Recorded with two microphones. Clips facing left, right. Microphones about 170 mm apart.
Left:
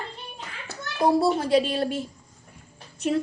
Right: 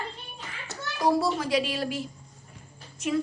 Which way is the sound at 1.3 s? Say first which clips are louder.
Left 5 dB; 30° left (ahead or behind).